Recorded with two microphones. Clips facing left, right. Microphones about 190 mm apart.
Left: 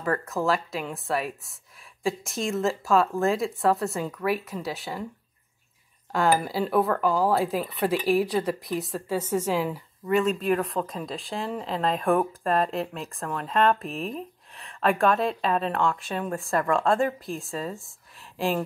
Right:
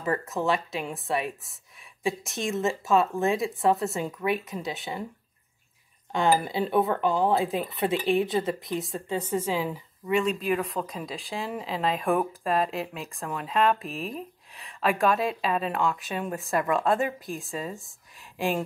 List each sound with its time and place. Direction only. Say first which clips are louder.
0.2 s speech: left 1 dB; centre (ahead or behind)
6.1 s a woman's voice: left 1 dB; centre (ahead or behind)
16.3 s speech: left 1 dB; 15° right (ahead or behind)
17.0 s speech: left 3 dB; centre (ahead or behind)